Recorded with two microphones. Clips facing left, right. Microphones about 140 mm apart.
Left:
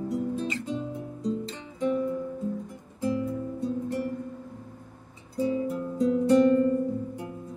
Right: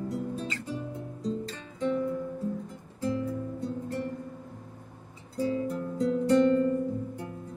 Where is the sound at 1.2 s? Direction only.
15° left (ahead or behind).